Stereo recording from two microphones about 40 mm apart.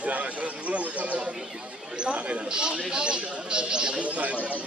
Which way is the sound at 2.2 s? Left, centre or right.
Right.